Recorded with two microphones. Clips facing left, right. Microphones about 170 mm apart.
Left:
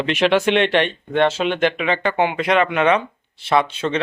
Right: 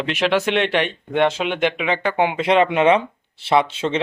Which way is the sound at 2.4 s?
30° right (ahead or behind).